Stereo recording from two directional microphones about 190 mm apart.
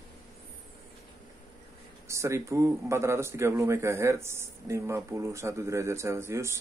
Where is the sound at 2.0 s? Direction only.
15° right (ahead or behind).